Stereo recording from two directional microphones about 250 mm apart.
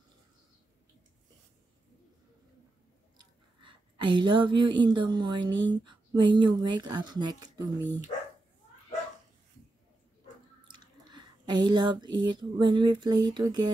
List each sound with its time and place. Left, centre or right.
3.2 s speech: centre
10.7 s speech: centre